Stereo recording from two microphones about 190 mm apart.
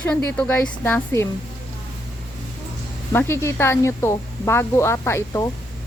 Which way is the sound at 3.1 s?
10° left (ahead or behind).